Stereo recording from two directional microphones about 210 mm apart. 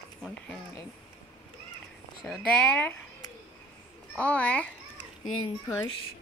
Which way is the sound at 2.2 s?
10° left (ahead or behind).